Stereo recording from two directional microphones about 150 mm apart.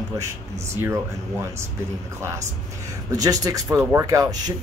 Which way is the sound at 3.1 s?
25° right (ahead or behind).